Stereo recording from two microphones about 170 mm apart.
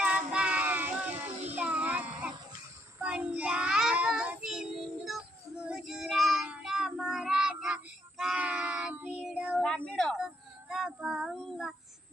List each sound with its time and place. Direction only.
0.0 s child singing: 10° right (ahead or behind)
1.3 s child singing: 40° right (ahead or behind)
1.6 s child singing: 10° right (ahead or behind)
9.6 s child singing: 5° left (ahead or behind)